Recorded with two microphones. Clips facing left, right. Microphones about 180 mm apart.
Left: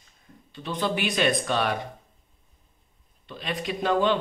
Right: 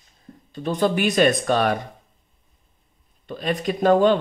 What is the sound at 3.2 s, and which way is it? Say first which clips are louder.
Speech: right 7 dB; 45° right (ahead or behind).